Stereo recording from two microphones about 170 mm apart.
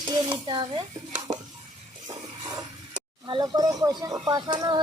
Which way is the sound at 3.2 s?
25° right (ahead or behind).